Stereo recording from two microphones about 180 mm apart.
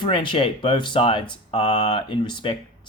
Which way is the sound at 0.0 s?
25° left (ahead or behind).